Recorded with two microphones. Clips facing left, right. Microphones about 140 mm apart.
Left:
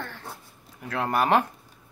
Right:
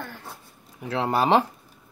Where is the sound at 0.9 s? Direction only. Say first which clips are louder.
Right 2 dB; 25° right (ahead or behind).